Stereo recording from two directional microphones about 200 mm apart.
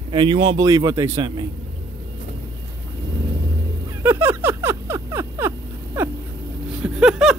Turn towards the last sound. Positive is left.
turn(degrees=-5)  # may be behind; listen again after turning